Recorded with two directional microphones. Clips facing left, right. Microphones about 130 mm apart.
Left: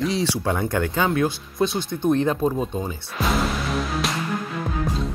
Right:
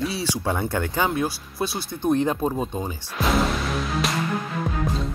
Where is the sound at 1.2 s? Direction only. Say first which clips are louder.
Left 4 dB; 10° right (ahead or behind).